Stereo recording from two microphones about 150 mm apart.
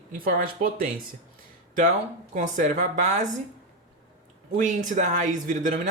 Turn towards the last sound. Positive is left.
turn(degrees=-60)  # may be behind; listen again after turning